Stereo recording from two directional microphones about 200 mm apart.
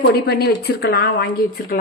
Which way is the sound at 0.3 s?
50° left (ahead or behind).